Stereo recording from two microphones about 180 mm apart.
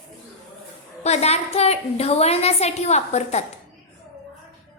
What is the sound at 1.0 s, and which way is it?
A woman's voice, 35° left (ahead or behind).